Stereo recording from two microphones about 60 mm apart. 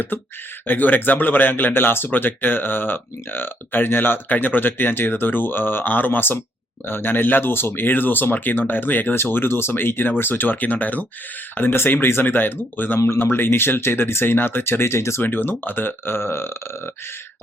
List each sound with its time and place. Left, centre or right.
0.7 s speech: left
15.2 s speech: left